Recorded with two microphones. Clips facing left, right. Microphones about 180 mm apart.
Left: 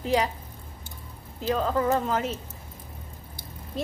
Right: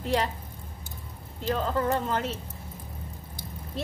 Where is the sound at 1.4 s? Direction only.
10° left (ahead or behind).